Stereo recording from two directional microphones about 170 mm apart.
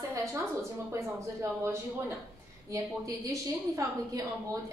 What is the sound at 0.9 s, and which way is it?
A woman's voice, 15° right (ahead or behind).